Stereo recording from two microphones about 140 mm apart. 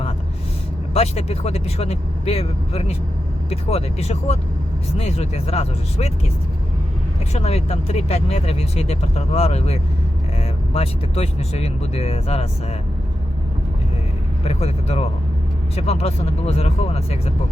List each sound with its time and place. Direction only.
0.9 s speech: 45° left (ahead or behind)
7.3 s speech: 45° left (ahead or behind)
14.4 s speech: 50° left (ahead or behind)